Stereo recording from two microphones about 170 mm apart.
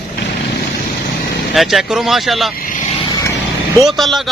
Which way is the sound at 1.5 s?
Centre (ahead or behind).